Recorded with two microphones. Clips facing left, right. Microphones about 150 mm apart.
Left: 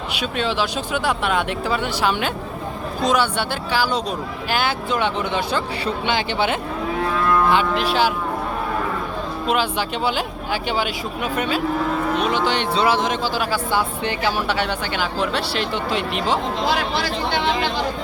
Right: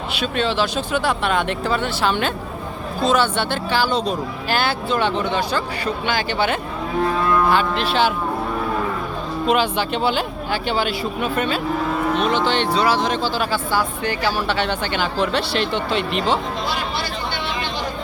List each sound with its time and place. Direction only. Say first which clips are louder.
0.1 s speech: right 2 dB; 10° left (ahead or behind)
5.2 s speech: right 1 dB; 20° left (ahead or behind)
9.5 s speech: right 3 dB; 5° left (ahead or behind)
12.7 s speech: even; 20° left (ahead or behind)